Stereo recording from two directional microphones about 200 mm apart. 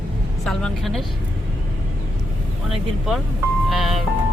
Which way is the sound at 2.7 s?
Centre (ahead or behind).